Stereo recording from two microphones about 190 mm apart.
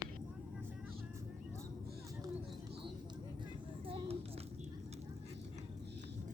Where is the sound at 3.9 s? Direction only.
30° right (ahead or behind).